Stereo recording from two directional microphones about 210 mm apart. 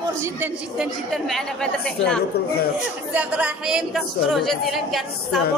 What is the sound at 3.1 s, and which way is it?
A woman's voice, 5° right (ahead or behind).